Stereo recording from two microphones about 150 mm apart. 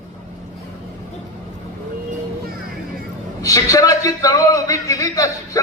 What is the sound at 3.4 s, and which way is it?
A man's voice, 25° left (ahead or behind).